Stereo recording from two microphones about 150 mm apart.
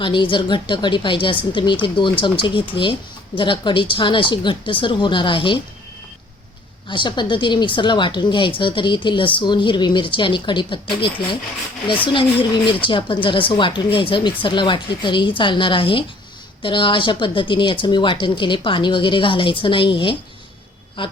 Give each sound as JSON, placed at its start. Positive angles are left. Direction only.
{"t": 0.0, "sound": "speech", "side_deg": 35}
{"t": 6.8, "sound": "speech", "side_deg": 30}
{"t": 12.8, "sound": "speech", "side_deg": 35}